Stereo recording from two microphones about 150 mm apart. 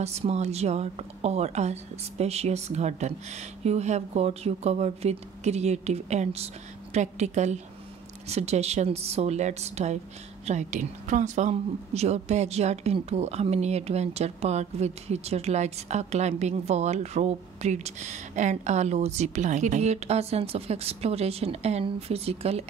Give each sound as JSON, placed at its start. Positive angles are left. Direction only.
{"t": 0.0, "sound": "speech", "side_deg": -45}